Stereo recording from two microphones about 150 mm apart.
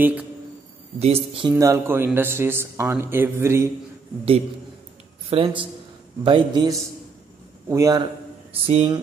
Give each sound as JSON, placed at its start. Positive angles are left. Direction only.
{"t": 0.0, "sound": "speech", "side_deg": -10}
{"t": 0.9, "sound": "speech", "side_deg": -40}
{"t": 1.5, "sound": "speech", "side_deg": -20}
{"t": 5.3, "sound": "speech", "side_deg": -40}
{"t": 7.6, "sound": "a man's voice", "side_deg": -20}
{"t": 8.6, "sound": "speech", "side_deg": -40}